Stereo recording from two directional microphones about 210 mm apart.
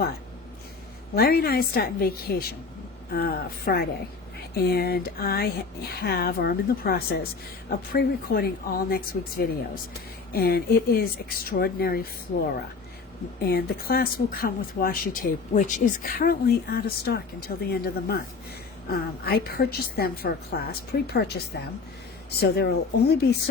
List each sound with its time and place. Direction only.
1.1 s speech: 45° left (ahead or behind)
13.4 s speech: 45° left (ahead or behind)
19.2 s speech: 45° left (ahead or behind)